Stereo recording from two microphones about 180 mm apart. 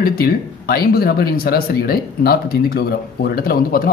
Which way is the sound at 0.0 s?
55° left (ahead or behind).